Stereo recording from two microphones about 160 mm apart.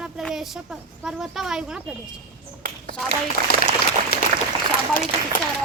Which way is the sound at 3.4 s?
60° right (ahead or behind).